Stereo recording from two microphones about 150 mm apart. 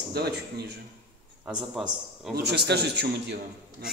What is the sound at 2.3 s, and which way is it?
Speech, 90° right.